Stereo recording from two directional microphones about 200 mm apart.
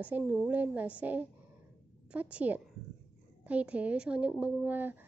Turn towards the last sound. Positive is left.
turn(degrees=-10)  # may be behind; listen again after turning